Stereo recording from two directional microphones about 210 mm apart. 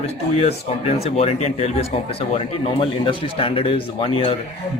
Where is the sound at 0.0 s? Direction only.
30° left (ahead or behind).